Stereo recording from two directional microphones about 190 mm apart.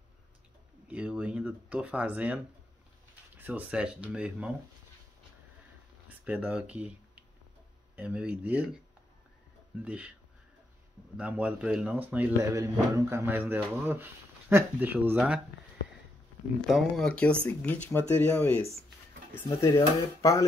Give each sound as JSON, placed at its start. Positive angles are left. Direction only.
{"t": 0.8, "sound": "speech", "side_deg": -5}
{"t": 6.0, "sound": "speech", "side_deg": -10}
{"t": 9.8, "sound": "speech", "side_deg": -5}
{"t": 11.1, "sound": "speech", "side_deg": -5}
{"t": 16.6, "sound": "speech", "side_deg": 0}